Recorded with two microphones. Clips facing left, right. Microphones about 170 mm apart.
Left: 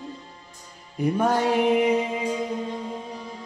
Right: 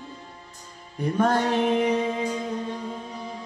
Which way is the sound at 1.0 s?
10° left (ahead or behind).